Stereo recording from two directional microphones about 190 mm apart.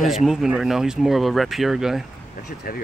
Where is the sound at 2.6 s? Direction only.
50° left (ahead or behind).